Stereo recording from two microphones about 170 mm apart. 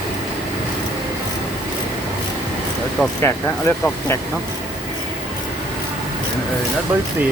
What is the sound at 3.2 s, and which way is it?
Speech, 15° left (ahead or behind).